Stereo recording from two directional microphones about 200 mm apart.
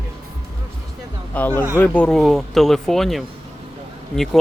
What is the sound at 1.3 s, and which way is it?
Speech, 10° left (ahead or behind).